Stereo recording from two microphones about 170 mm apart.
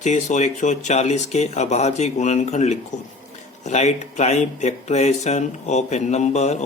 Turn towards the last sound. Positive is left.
turn(degrees=40)  # may be behind; listen again after turning